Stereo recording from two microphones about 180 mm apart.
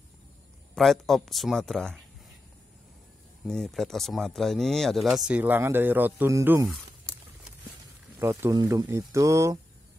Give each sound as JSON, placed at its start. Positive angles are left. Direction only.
{"t": 0.7, "sound": "speech", "side_deg": 0}
{"t": 3.4, "sound": "speech", "side_deg": 5}
{"t": 8.2, "sound": "speech", "side_deg": -15}